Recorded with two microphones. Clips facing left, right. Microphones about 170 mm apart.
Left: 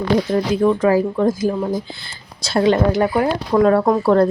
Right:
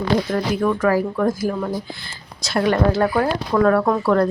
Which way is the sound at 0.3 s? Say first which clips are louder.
Left 4 dB; 25° left (ahead or behind).